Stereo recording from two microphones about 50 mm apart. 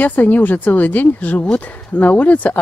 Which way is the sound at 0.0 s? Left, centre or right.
Left.